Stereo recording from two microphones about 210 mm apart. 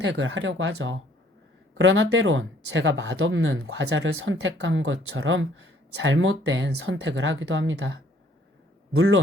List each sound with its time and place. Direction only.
0.0 s speech: 60° right (ahead or behind)
9.0 s speech: 70° right (ahead or behind)